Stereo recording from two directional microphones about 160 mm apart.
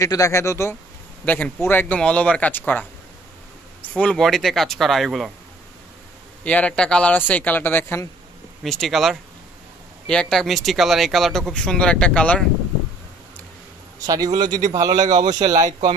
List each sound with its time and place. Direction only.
0.0 s speech: 20° left (ahead or behind); by 5.3 s centre (ahead or behind)
6.4 s speech: 10° left (ahead or behind)
8.6 s speech: centre (ahead or behind)
14.0 s speech: 25° right (ahead or behind)